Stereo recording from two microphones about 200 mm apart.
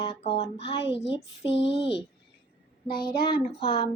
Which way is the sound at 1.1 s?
60° left (ahead or behind).